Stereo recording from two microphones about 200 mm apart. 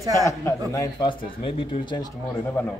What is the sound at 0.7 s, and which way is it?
Speech, 20° left (ahead or behind).